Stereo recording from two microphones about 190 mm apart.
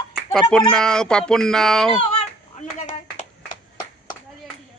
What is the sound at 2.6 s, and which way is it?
Clapping, 40° left (ahead or behind).